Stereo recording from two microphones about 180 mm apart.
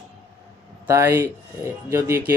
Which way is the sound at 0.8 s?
15° right (ahead or behind).